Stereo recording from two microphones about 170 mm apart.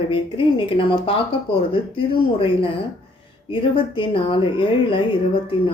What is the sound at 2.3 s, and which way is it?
Speech, 30° left (ahead or behind).